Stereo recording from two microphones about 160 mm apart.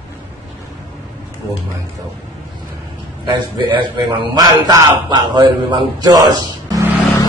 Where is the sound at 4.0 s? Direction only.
25° right (ahead or behind).